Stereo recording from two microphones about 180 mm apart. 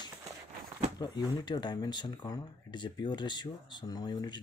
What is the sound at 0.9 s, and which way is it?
Speech, 25° left (ahead or behind).